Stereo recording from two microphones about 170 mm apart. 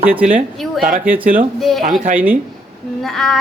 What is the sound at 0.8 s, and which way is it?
Speech, 50° right (ahead or behind).